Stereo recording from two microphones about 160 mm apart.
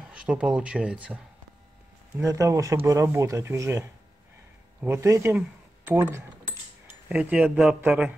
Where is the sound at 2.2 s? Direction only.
20° right (ahead or behind).